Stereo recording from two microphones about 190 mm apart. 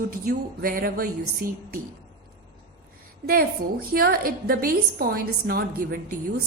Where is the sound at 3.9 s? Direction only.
50° right (ahead or behind).